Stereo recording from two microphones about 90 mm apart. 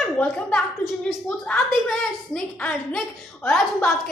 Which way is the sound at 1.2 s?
5° left (ahead or behind).